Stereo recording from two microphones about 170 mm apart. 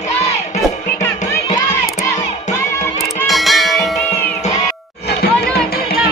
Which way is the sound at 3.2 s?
Centre (ahead or behind).